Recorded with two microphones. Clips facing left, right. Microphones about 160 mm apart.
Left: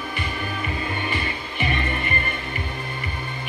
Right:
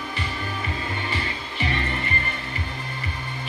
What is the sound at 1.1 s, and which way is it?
Music, 15° left (ahead or behind).